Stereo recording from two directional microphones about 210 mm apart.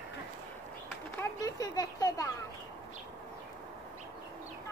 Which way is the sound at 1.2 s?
15° left (ahead or behind).